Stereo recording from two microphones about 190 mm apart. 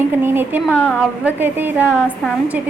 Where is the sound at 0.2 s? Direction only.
10° right (ahead or behind).